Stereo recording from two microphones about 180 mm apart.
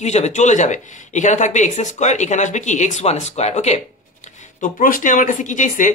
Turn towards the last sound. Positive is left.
turn(degrees=45)  # may be behind; listen again after turning